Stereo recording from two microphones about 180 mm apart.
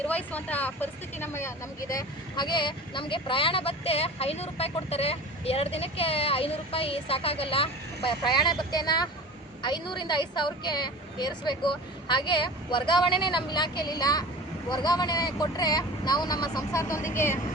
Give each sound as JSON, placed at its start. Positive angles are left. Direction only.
{"t": 0.0, "sound": "a woman's voice", "side_deg": 10}